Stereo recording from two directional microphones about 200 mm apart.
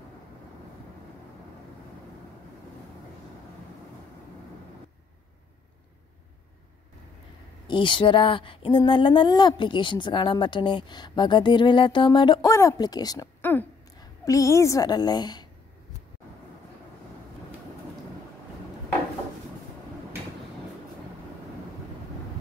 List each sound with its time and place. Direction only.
7.6 s speech: 25° left (ahead or behind)